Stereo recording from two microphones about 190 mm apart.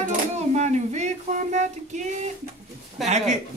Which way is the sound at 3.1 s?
35° right (ahead or behind).